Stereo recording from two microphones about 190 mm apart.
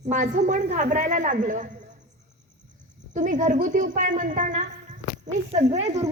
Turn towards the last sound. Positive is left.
turn(degrees=-35)  # may be behind; listen again after turning